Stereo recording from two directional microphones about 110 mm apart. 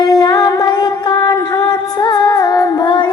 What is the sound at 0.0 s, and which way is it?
Music, 40° left (ahead or behind).